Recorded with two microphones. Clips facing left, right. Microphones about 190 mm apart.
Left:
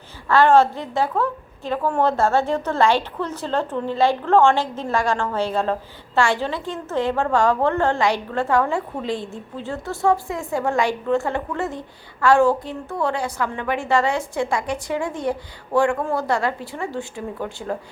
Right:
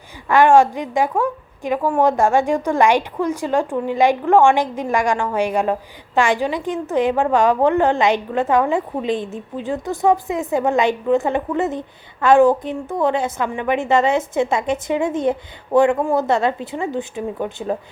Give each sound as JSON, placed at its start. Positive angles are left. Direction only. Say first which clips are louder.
{"t": 0.3, "sound": "a woman's voice", "louder": "right 2 dB", "side_deg": -15}